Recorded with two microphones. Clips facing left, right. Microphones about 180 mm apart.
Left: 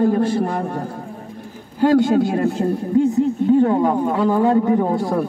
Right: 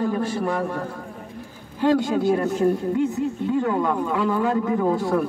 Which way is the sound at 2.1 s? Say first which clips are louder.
Left 3 dB; 40° left (ahead or behind).